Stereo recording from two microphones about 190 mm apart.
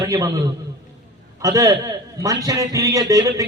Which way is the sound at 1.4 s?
20° right (ahead or behind).